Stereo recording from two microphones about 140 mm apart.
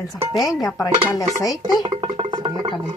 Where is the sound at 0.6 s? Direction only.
25° left (ahead or behind).